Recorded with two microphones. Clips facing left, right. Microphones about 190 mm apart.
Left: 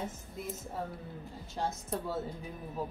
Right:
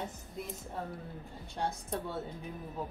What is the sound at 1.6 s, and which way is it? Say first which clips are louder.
Speech: even; centre (ahead or behind).